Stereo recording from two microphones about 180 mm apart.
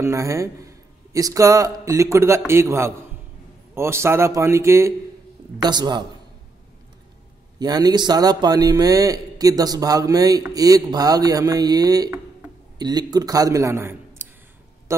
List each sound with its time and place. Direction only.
0.0 s a man's voice: 15° right (ahead or behind)
7.5 s a man's voice: 20° right (ahead or behind)